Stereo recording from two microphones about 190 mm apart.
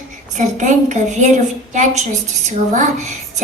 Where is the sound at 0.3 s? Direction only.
40° right (ahead or behind).